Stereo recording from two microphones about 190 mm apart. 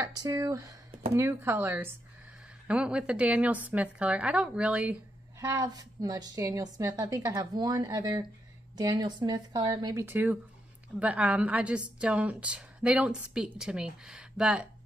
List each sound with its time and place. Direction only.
0.0 s a woman's voice: 20° right (ahead or behind)
5.4 s a woman's voice: 20° right (ahead or behind)